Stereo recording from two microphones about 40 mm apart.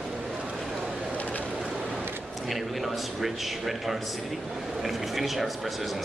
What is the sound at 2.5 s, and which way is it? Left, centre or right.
A man's voice, centre.